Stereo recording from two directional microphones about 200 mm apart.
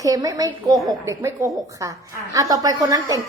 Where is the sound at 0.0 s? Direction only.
20° right (ahead or behind).